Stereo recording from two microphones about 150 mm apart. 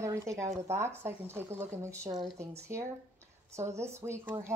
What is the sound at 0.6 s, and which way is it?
Speech, 20° right (ahead or behind).